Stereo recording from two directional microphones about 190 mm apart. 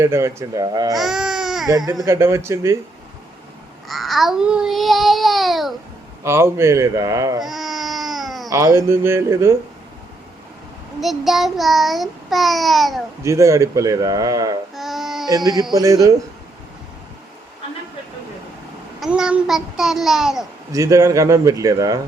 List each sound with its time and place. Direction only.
0.0 s a man's voice: 15° right (ahead or behind)
0.9 s baby cry: centre (ahead or behind)
1.6 s a man's voice: 20° right (ahead or behind)
3.8 s child singing: centre (ahead or behind)
6.2 s a man's voice: 15° right (ahead or behind)
7.4 s baby cry: centre (ahead or behind)
8.4 s a man's voice: 15° right (ahead or behind)
11.0 s child singing: centre (ahead or behind)
13.2 s a man's voice: 15° right (ahead or behind)
14.8 s a sound: centre (ahead or behind)
15.7 s a man's voice: 20° right (ahead or behind)
18.9 s child singing: centre (ahead or behind)
20.7 s a man's voice: 15° right (ahead or behind)